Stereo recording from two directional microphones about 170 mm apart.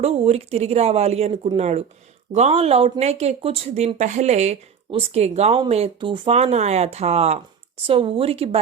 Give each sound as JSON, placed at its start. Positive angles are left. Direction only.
{"t": 0.0, "sound": "speech", "side_deg": -35}